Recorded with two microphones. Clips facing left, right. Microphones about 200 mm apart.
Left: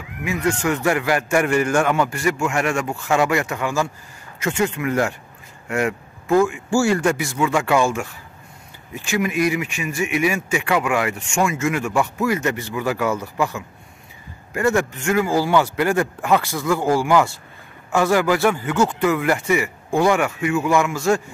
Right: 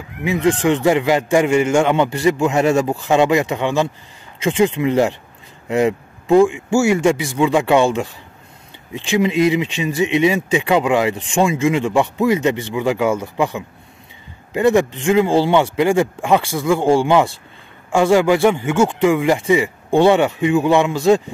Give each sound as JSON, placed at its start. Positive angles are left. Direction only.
{"t": 0.3, "sound": "speech", "side_deg": -20}
{"t": 9.1, "sound": "speech", "side_deg": -20}
{"t": 12.2, "sound": "speech", "side_deg": -20}
{"t": 14.5, "sound": "speech", "side_deg": -20}
{"t": 19.9, "sound": "speech", "side_deg": -30}